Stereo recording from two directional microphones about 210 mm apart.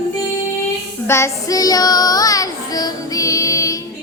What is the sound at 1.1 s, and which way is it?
Child singing, 15° left (ahead or behind).